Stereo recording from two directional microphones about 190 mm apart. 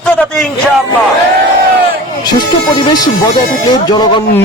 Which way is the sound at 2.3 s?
25° left (ahead or behind).